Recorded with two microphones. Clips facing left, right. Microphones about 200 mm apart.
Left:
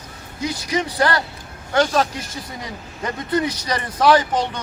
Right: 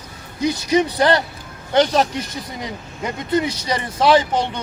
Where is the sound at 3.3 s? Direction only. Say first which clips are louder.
Right 2 dB; 25° right (ahead or behind).